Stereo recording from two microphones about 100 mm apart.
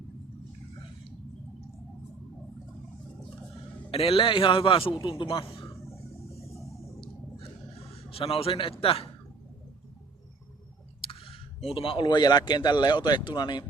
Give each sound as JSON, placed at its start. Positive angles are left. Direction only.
{"t": 3.9, "sound": "a man's voice", "side_deg": 70}
{"t": 5.6, "sound": "a sound", "side_deg": 30}
{"t": 7.0, "sound": "gasp", "side_deg": 70}
{"t": 8.8, "sound": "speech", "side_deg": 70}
{"t": 11.0, "sound": "a sound", "side_deg": 70}
{"t": 12.0, "sound": "speech", "side_deg": 45}